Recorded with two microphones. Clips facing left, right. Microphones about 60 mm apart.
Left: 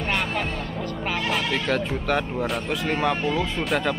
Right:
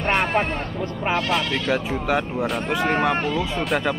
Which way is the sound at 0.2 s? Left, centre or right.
Right.